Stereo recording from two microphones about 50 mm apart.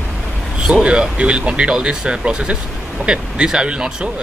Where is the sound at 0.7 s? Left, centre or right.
Centre.